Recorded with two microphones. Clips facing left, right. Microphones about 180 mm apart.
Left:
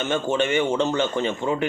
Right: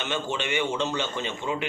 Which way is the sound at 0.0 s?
45° left (ahead or behind).